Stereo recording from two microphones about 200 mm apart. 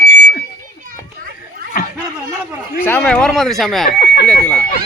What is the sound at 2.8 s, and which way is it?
Speech, 10° left (ahead or behind).